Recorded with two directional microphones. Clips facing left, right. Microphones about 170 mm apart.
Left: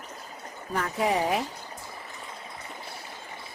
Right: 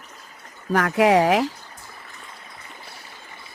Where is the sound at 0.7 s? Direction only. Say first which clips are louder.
Right 9 dB; 85° right.